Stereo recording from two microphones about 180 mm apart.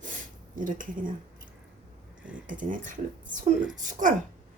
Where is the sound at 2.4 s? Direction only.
45° right (ahead or behind).